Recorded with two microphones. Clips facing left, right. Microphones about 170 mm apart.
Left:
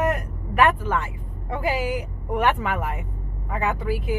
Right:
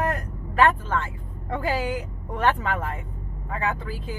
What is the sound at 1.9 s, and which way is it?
Speech, 15° left (ahead or behind).